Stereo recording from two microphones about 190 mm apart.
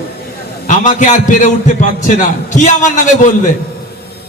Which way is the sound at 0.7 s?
40° left (ahead or behind).